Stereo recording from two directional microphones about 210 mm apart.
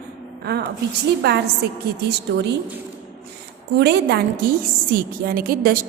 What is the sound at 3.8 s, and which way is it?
A woman's voice, 50° right (ahead or behind).